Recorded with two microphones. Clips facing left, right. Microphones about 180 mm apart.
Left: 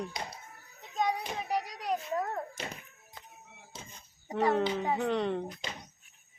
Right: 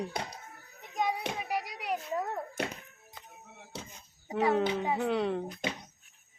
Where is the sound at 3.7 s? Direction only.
70° right (ahead or behind).